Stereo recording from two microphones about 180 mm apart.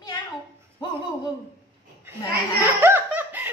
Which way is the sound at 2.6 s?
10° right (ahead or behind).